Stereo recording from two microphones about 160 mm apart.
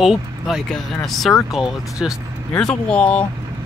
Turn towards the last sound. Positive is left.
turn(degrees=10)  # may be behind; listen again after turning